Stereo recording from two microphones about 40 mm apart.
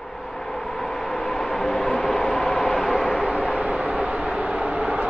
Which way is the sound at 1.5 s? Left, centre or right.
Centre.